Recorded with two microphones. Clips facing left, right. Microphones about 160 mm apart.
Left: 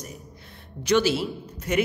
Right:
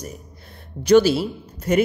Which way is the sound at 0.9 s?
40° right (ahead or behind).